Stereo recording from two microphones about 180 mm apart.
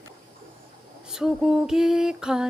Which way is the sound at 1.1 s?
Centre (ahead or behind).